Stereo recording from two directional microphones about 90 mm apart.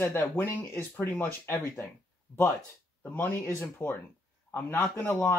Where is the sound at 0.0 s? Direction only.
25° left (ahead or behind).